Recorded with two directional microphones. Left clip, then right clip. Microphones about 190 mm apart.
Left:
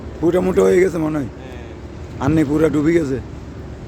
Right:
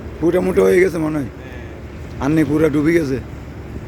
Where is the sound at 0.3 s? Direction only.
5° left (ahead or behind).